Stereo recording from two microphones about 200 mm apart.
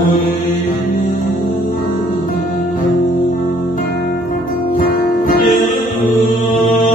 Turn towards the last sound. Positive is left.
turn(degrees=45)  # may be behind; listen again after turning